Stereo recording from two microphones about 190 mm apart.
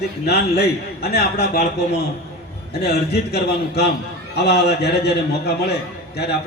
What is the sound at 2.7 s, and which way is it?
A man's voice, 60° left (ahead or behind).